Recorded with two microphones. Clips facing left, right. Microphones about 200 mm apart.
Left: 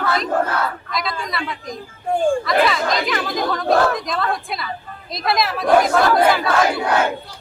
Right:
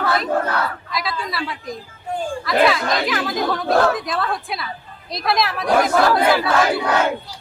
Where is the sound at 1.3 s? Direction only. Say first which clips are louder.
Even; 5° right (ahead or behind).